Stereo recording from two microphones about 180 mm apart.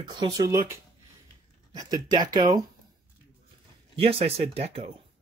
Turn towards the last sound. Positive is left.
turn(degrees=-35)  # may be behind; listen again after turning